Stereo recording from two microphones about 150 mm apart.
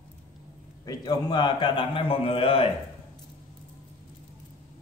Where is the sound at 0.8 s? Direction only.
25° left (ahead or behind).